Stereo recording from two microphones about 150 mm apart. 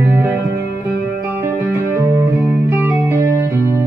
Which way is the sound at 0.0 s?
15° right (ahead or behind).